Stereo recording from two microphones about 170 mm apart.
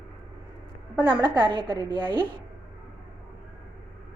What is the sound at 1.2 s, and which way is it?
A woman's voice, 25° right (ahead or behind).